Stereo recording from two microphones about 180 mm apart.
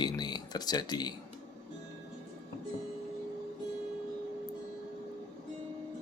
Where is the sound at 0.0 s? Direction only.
25° left (ahead or behind).